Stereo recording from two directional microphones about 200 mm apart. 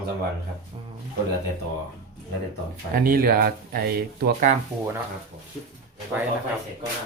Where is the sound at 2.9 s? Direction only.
45° right (ahead or behind).